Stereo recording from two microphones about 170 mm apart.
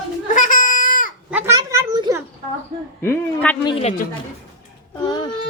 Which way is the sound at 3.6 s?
25° left (ahead or behind).